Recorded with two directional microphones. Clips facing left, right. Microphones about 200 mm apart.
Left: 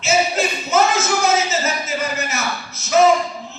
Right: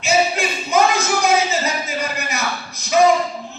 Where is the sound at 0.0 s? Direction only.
15° right (ahead or behind).